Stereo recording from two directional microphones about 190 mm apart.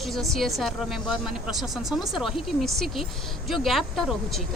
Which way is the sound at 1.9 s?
Centre (ahead or behind).